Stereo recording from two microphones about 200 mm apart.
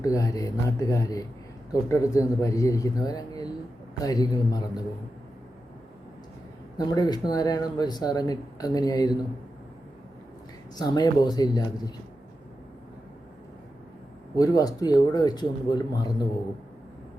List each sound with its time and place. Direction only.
0.0 s speech: 15° left (ahead or behind)
6.7 s speech: 20° left (ahead or behind)
10.8 s speech: 20° left (ahead or behind)
14.3 s speech: 20° left (ahead or behind)